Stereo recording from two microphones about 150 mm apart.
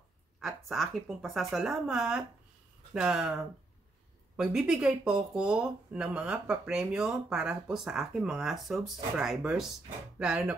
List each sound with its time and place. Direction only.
0.4 s speech: centre (ahead or behind)